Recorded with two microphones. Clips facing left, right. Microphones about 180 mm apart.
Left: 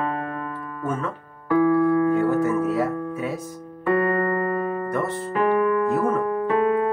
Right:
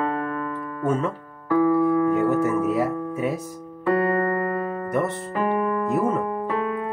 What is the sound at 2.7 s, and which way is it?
Music, 20° right (ahead or behind).